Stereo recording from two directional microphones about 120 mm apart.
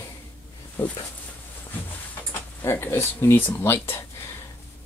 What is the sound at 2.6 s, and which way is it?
Speech, 20° left (ahead or behind).